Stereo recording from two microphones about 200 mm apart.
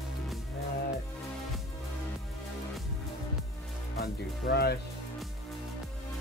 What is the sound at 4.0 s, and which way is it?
Speech, 50° left (ahead or behind).